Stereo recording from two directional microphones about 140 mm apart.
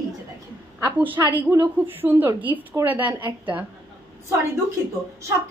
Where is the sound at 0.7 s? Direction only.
15° right (ahead or behind).